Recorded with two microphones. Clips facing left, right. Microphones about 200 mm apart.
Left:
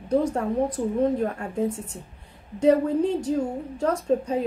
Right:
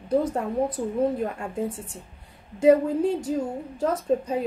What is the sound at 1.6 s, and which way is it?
Speech, 40° left (ahead or behind).